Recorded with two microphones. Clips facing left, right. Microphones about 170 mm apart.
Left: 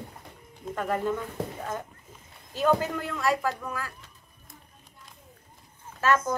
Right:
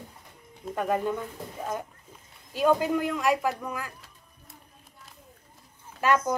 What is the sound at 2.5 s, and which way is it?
Speech, 15° right (ahead or behind).